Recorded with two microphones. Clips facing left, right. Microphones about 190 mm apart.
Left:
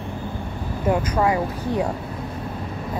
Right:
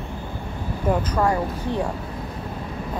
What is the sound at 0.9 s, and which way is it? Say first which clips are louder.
Speech: left 1 dB; 10° left (ahead or behind).